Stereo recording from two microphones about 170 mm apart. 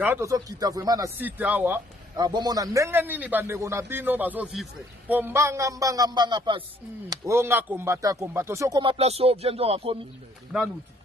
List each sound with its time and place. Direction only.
0.0 s a man's voice: 15° right (ahead or behind)
2.1 s a man's voice: 25° right (ahead or behind)
7.1 s a man's voice: 15° right (ahead or behind)
8.9 s speech: 35° right (ahead or behind)